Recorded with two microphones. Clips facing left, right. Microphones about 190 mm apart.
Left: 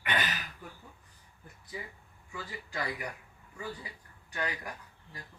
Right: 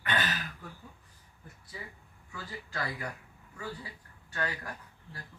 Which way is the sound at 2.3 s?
15° left (ahead or behind).